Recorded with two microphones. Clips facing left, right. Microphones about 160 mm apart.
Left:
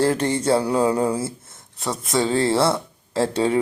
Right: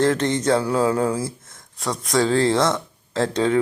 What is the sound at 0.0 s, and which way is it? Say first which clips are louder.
Speech: right 1 dB; 10° left (ahead or behind).